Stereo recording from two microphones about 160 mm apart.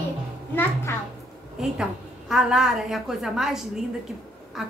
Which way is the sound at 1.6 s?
5° right (ahead or behind).